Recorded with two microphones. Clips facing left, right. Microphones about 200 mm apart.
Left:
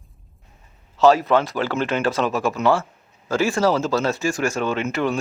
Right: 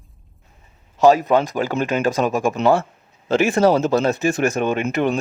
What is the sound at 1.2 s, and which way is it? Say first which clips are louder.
A man's voice: right 2 dB; 15° right (ahead or behind).